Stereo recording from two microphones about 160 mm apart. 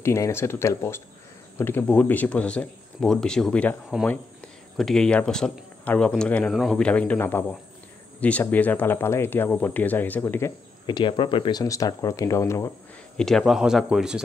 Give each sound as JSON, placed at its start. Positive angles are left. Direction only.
{"t": 0.0, "sound": "speech", "side_deg": 15}
{"t": 3.9, "sound": "speech", "side_deg": -5}
{"t": 10.9, "sound": "speech", "side_deg": 30}
{"t": 13.2, "sound": "speech", "side_deg": 0}